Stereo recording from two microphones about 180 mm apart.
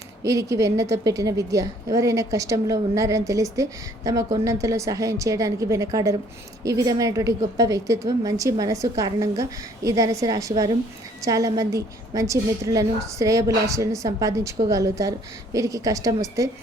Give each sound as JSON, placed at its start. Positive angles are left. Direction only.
{"t": 0.2, "sound": "a woman's voice", "side_deg": -15}